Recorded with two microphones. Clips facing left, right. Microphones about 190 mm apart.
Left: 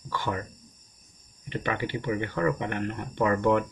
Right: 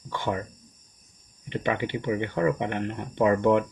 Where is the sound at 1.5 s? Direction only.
20° right (ahead or behind).